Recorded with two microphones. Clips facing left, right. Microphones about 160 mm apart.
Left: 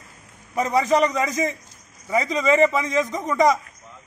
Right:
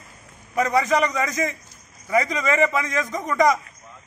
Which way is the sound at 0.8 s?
30° left (ahead or behind).